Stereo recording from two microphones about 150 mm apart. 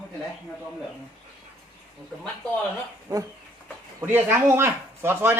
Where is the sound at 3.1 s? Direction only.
25° right (ahead or behind).